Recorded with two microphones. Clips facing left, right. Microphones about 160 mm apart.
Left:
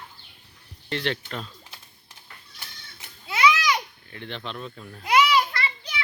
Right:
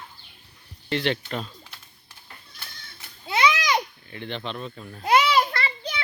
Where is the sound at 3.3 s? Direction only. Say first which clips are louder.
Even; 30° right (ahead or behind).